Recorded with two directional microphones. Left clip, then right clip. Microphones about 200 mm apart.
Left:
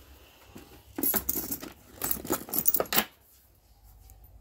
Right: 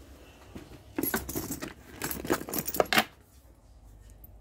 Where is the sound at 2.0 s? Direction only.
10° right (ahead or behind).